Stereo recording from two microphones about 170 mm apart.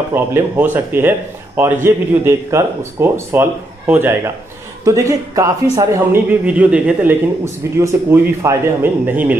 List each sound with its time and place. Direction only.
0.1 s speech: 10° right (ahead or behind)